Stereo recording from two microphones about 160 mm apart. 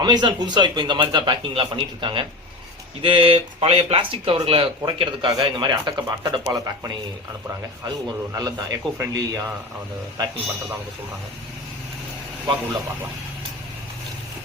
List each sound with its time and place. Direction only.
0.0 s speech: 25° right (ahead or behind)